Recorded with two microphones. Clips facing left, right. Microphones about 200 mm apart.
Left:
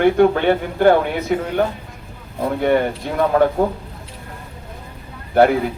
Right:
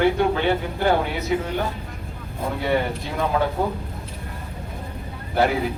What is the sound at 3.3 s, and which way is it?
Speech, 55° left (ahead or behind).